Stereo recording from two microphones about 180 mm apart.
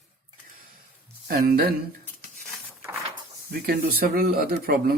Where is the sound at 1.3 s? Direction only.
55° right (ahead or behind).